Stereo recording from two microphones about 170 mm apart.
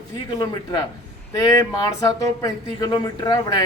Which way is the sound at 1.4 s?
20° left (ahead or behind).